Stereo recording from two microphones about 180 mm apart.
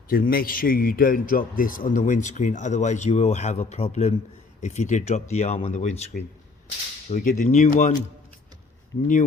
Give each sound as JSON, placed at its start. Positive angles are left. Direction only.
{"t": 0.1, "sound": "a man's voice", "side_deg": 55}
{"t": 7.1, "sound": "a man's voice", "side_deg": 45}